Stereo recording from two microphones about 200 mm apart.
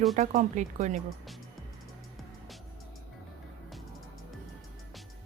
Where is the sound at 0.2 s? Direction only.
35° right (ahead or behind).